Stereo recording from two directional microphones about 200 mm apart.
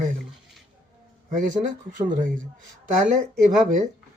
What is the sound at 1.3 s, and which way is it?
Speech, 40° right (ahead or behind).